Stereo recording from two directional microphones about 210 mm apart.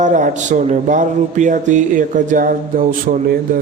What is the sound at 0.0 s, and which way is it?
A man's voice, 35° right (ahead or behind).